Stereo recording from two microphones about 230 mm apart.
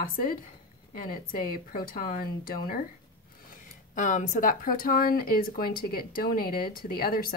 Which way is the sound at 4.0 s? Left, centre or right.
Left.